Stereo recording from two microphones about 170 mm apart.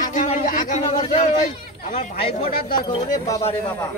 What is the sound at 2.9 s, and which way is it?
Speech, 20° left (ahead or behind).